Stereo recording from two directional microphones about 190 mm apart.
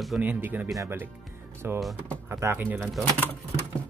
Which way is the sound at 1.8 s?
Centre (ahead or behind).